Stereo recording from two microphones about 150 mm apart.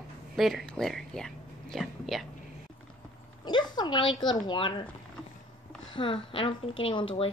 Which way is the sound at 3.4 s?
30° left (ahead or behind).